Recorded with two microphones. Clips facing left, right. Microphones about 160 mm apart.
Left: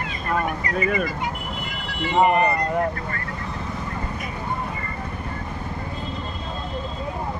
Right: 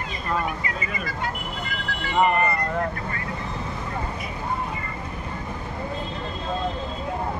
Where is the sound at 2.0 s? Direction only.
20° left (ahead or behind).